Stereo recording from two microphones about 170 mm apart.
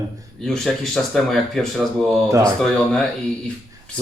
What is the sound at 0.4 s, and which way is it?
Speech, 5° left (ahead or behind).